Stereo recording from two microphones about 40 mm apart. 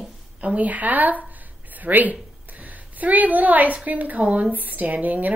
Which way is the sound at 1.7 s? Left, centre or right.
Right.